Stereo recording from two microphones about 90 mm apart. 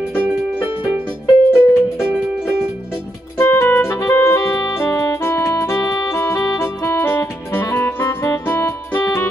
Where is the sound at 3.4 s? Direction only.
30° left (ahead or behind).